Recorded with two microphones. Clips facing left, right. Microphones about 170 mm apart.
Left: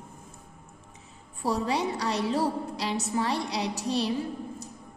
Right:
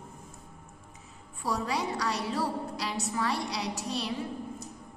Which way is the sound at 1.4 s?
30° left (ahead or behind).